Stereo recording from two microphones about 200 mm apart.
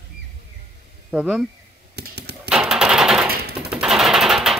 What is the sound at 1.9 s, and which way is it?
Computer keyboard, 55° right (ahead or behind).